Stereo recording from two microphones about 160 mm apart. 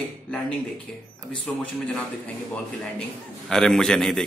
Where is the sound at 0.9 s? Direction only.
5° left (ahead or behind).